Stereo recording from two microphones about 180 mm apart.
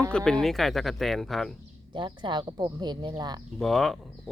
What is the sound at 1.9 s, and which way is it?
Speech, 25° right (ahead or behind).